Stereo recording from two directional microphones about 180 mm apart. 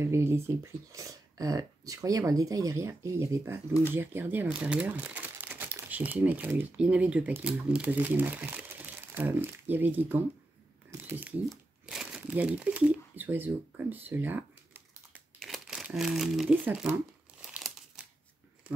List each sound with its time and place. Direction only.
0.0 s speech: 15° right (ahead or behind)
17.5 s crumpling: 5° right (ahead or behind)